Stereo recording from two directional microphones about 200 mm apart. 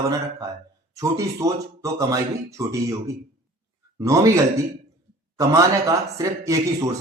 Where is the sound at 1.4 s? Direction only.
15° right (ahead or behind).